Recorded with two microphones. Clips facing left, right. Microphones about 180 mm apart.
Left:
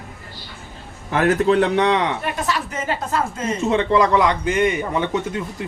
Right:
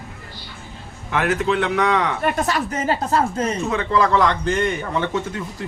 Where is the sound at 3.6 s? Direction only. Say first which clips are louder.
Left 5 dB; 25° left (ahead or behind).